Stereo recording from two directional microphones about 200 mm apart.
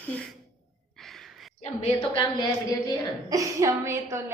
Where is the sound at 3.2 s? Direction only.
15° right (ahead or behind).